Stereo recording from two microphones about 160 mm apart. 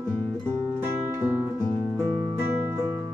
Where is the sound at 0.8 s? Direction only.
15° right (ahead or behind).